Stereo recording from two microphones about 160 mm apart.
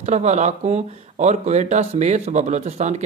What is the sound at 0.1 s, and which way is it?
Speech, 45° right (ahead or behind).